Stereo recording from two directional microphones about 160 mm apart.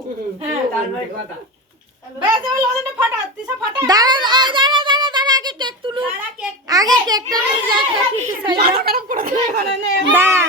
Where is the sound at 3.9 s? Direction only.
25° right (ahead or behind).